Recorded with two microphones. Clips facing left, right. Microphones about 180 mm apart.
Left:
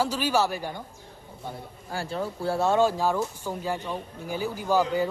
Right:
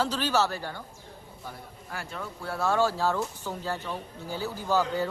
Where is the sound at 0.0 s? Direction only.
10° left (ahead or behind).